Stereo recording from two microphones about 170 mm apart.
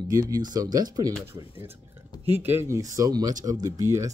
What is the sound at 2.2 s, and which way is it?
Speech, 10° right (ahead or behind).